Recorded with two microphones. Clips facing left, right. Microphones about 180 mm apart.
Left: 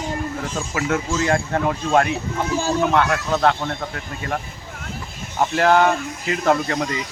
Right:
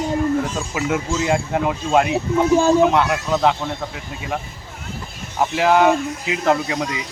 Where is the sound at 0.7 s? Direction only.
10° right (ahead or behind).